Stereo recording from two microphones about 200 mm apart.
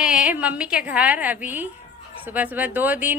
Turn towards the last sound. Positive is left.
turn(degrees=-10)  # may be behind; listen again after turning